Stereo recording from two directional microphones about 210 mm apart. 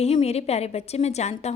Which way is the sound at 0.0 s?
30° left (ahead or behind).